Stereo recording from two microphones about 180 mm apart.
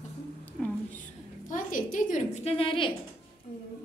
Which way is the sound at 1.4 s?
50° left (ahead or behind).